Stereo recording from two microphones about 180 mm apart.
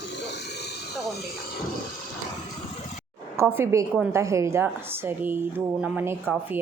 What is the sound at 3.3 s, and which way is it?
A woman's voice, 10° right (ahead or behind).